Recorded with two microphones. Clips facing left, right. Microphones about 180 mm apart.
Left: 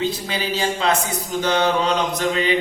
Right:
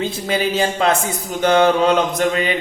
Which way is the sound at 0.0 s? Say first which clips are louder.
Right 4 dB; 50° right (ahead or behind).